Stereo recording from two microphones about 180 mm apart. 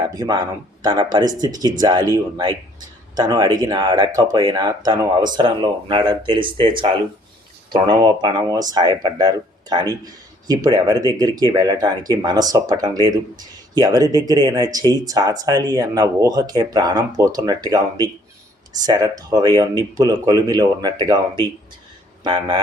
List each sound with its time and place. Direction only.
0.0 s speech: 20° right (ahead or behind)